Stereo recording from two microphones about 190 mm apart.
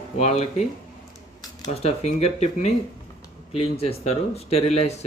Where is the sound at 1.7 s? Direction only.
35° left (ahead or behind).